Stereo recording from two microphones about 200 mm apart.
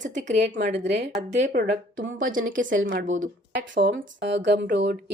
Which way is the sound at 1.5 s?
50° right (ahead or behind).